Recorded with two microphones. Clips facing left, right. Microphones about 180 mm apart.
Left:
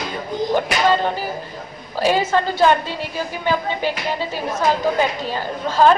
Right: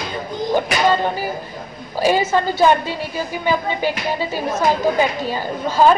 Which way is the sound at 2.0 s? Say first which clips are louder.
Right 1 dB; 10° right (ahead or behind).